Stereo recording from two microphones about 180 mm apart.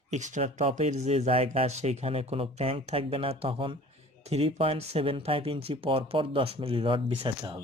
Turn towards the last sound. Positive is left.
turn(degrees=-25)  # may be behind; listen again after turning